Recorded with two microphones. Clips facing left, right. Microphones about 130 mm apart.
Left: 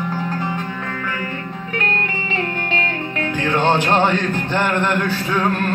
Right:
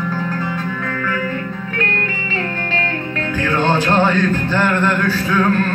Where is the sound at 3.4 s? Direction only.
15° left (ahead or behind).